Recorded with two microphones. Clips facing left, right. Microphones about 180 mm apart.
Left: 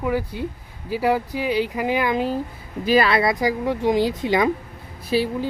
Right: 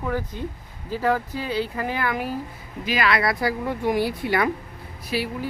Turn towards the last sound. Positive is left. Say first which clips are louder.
# left 5 dB
turn(degrees=25)  # may be behind; listen again after turning